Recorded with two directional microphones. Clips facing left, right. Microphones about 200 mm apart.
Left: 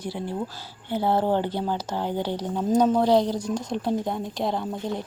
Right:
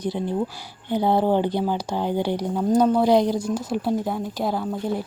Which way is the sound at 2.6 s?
5° left (ahead or behind).